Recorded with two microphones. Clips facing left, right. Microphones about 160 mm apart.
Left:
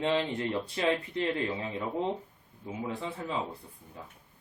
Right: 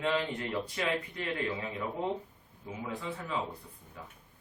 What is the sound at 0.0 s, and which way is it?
Speech, 30° left (ahead or behind).